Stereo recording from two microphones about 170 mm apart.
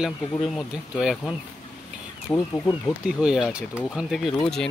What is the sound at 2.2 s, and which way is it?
Speech, 15° left (ahead or behind).